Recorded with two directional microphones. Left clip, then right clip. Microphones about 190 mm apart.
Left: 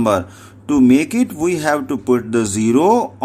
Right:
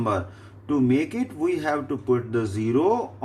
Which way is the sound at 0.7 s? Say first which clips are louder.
Left 9 dB; 50° left (ahead or behind).